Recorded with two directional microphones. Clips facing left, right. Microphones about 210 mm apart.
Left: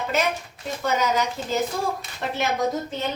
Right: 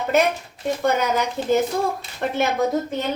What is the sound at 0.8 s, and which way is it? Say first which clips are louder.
Speech: right 2 dB; 55° right (ahead or behind).